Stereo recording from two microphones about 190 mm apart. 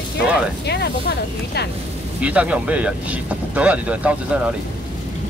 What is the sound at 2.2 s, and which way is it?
Speech, 5° right (ahead or behind).